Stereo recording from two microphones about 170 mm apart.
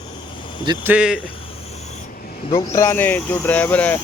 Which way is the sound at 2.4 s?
30° left (ahead or behind).